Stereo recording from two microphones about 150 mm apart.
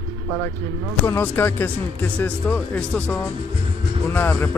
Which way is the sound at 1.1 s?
15° left (ahead or behind).